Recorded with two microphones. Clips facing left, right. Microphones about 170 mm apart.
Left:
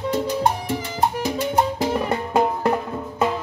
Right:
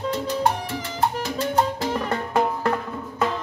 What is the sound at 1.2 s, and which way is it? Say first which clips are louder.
Music: left 2 dB; 15° left (ahead or behind).